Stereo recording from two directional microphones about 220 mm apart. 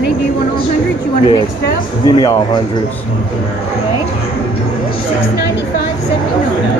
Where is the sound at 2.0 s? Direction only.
20° left (ahead or behind).